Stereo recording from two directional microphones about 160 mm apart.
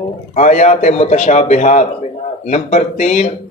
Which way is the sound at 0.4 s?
50° left (ahead or behind).